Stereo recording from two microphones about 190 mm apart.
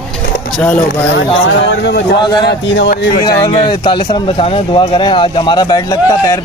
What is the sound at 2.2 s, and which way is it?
Speech, 25° left (ahead or behind).